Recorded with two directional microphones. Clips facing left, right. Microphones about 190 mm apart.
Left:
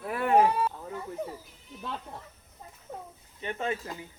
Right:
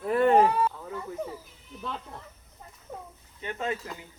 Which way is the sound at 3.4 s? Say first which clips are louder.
Even; 20° left (ahead or behind).